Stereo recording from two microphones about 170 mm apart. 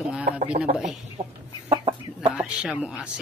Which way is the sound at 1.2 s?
45° right (ahead or behind).